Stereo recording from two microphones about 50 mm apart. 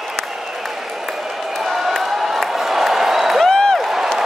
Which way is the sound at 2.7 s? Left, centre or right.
Centre.